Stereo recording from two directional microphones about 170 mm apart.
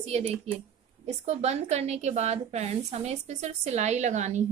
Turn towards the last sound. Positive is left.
turn(degrees=-45)  # may be behind; listen again after turning